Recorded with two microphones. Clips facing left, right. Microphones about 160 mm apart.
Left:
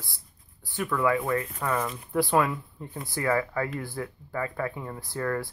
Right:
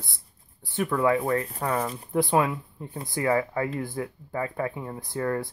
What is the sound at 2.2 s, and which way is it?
Speech, 20° right (ahead or behind).